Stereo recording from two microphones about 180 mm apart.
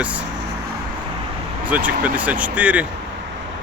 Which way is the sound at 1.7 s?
10° right (ahead or behind).